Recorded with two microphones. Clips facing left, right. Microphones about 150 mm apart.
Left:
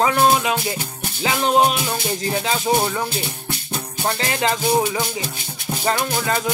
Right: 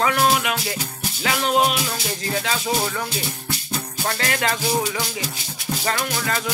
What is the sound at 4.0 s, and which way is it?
Speech, 25° left (ahead or behind).